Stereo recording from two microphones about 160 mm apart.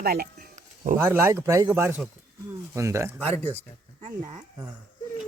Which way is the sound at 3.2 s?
10° left (ahead or behind).